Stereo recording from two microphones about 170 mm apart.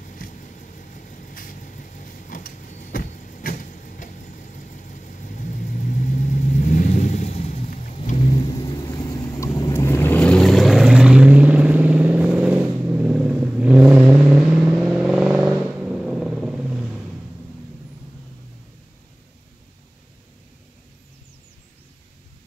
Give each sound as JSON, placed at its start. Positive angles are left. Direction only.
{"t": 0.0, "sound": "vehicle", "side_deg": 50}
{"t": 9.0, "sound": "vehicle", "side_deg": 15}